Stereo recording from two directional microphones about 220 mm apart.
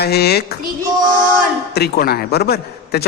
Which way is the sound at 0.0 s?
45° left (ahead or behind).